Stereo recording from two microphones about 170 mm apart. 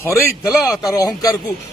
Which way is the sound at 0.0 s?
15° left (ahead or behind).